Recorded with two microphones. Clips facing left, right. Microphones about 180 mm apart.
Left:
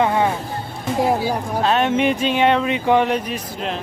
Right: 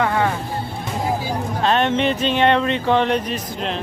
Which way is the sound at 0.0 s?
20° left (ahead or behind).